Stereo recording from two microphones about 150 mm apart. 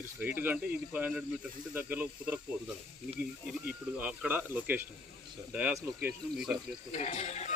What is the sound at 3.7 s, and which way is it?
Speech, 10° right (ahead or behind).